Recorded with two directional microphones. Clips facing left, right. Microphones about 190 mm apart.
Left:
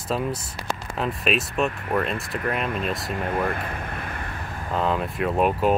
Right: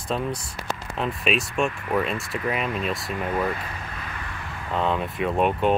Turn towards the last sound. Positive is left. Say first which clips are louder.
# left 1 dB
turn(degrees=5)  # may be behind; listen again after turning